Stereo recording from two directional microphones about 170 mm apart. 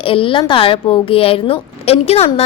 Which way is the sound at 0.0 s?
30° left (ahead or behind).